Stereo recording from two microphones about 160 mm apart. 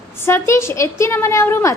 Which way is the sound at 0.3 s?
15° left (ahead or behind).